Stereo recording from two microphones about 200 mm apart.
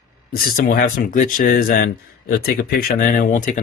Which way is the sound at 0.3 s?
45° left (ahead or behind).